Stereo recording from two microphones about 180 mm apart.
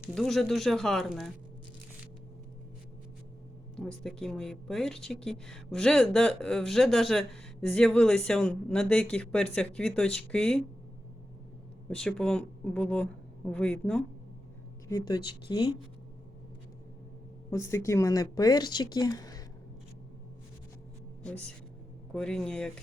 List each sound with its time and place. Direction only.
0.1 s speech: centre (ahead or behind)
3.8 s a woman's voice: 5° left (ahead or behind)
11.9 s speech: 5° left (ahead or behind)
14.8 s speech: 20° left (ahead or behind)
17.5 s speech: 15° left (ahead or behind)
21.2 s a woman's voice: 5° left (ahead or behind)